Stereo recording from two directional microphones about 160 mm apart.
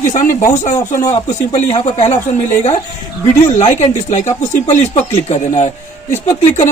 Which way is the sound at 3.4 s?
45° left (ahead or behind).